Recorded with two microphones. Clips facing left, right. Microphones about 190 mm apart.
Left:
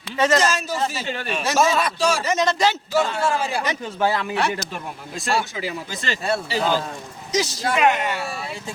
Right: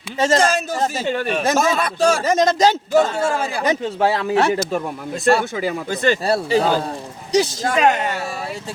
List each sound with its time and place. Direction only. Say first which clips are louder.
0.2 s a man's voice: right 2 dB; 30° right (ahead or behind)
0.4 s a man's voice: right 3 dB; 50° right (ahead or behind)
3.8 s a man's voice: right 4 dB; 30° right (ahead or behind); by 6.1 s 55° right (ahead or behind)
6.2 s speech: even; 40° right (ahead or behind)